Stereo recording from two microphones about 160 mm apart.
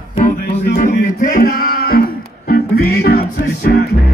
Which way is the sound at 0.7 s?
55° left (ahead or behind).